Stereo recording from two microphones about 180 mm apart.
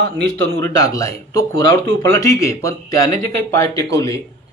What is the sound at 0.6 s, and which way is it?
Speech, 20° left (ahead or behind).